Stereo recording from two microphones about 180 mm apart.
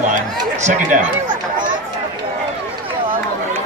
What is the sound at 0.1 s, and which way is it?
Chatter, 40° right (ahead or behind).